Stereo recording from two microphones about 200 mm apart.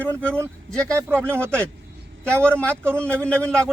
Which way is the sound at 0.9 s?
10° right (ahead or behind).